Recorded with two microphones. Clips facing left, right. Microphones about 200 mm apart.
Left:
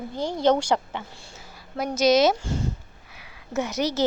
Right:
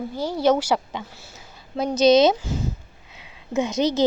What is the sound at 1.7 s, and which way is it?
A woman's voice, 20° right (ahead or behind).